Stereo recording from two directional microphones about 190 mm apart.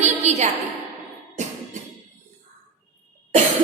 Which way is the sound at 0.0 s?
35° right (ahead or behind).